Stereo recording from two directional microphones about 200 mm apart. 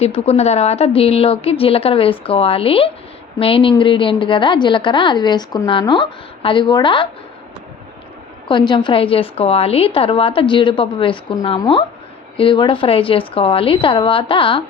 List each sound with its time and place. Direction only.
0.0 s a woman's voice: 30° left (ahead or behind)
8.4 s a woman's voice: 25° left (ahead or behind)